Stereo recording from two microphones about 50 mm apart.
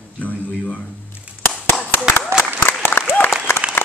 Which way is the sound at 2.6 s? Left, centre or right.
Left.